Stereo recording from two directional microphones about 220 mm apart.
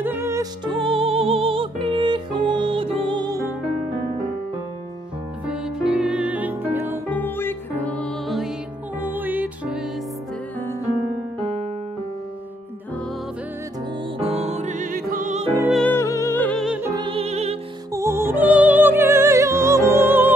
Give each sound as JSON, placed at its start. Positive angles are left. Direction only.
{"t": 0.0, "sound": "music", "side_deg": -10}
{"t": 5.5, "sound": "music", "side_deg": -5}
{"t": 7.1, "sound": "music", "side_deg": 10}
{"t": 9.0, "sound": "music", "side_deg": -10}
{"t": 14.2, "sound": "music", "side_deg": -30}
{"t": 15.7, "sound": "music", "side_deg": 5}
{"t": 16.9, "sound": "music", "side_deg": -20}
{"t": 17.9, "sound": "music", "side_deg": -10}